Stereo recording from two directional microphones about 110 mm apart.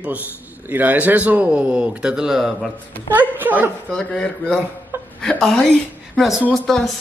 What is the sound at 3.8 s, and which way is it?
A man's voice, 5° left (ahead or behind).